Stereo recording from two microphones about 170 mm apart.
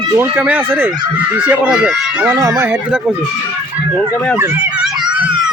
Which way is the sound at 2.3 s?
15° right (ahead or behind).